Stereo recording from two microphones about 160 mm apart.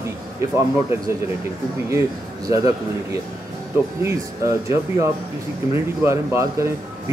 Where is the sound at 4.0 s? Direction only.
20° right (ahead or behind).